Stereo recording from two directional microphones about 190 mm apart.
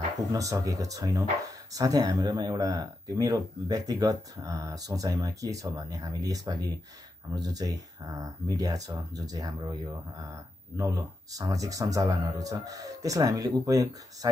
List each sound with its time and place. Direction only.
0.3 s speech: 20° right (ahead or behind)